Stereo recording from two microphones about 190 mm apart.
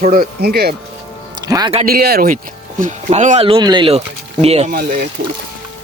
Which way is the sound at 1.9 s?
55° right (ahead or behind).